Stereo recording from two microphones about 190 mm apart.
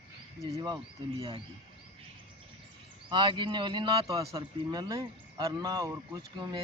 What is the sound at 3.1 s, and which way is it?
Speech, 25° right (ahead or behind).